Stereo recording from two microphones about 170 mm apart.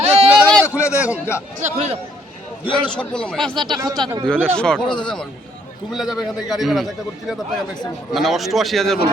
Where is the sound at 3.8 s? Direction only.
25° right (ahead or behind).